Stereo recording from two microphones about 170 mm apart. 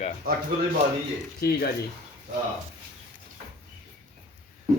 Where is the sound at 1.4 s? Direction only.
70° left (ahead or behind).